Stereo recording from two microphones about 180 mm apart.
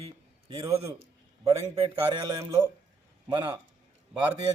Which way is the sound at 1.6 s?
30° right (ahead or behind).